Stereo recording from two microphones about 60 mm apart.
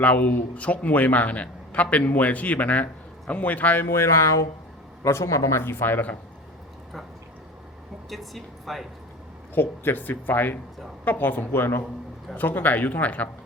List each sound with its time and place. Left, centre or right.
0.0 s a man's voice: left
3.9 s a man's voice: left
5.7 s speech: left
8.1 s speech: centre
9.6 s a man's voice: left